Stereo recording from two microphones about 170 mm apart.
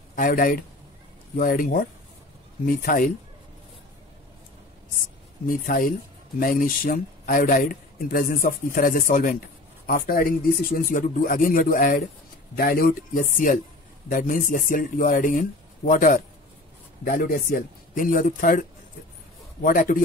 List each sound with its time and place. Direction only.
0.1 s a man's voice: 55° left (ahead or behind)
5.5 s a man's voice: 55° left (ahead or behind)